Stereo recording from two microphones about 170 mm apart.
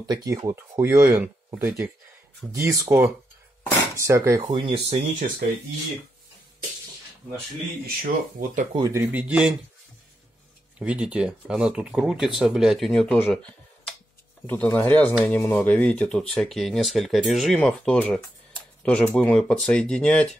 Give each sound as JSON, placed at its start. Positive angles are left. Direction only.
{"t": 0.0, "sound": "speech", "side_deg": -20}
{"t": 4.4, "sound": "speech", "side_deg": -30}
{"t": 7.8, "sound": "speech", "side_deg": -55}
{"t": 8.7, "sound": "speech", "side_deg": -20}
{"t": 9.1, "sound": "speech", "side_deg": -5}
{"t": 10.8, "sound": "speech", "side_deg": -5}